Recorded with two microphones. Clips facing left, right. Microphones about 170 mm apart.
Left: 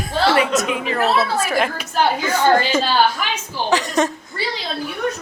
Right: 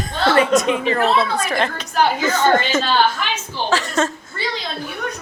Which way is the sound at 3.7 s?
15° left (ahead or behind).